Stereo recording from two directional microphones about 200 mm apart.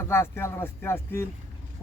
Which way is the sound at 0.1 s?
10° left (ahead or behind).